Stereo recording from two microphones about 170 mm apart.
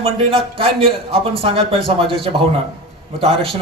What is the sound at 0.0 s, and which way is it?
A man's voice, 30° right (ahead or behind).